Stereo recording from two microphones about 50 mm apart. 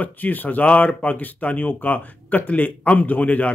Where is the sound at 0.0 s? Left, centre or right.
Left.